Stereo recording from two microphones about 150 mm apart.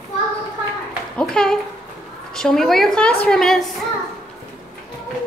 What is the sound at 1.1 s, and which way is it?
A woman's voice, 5° left (ahead or behind).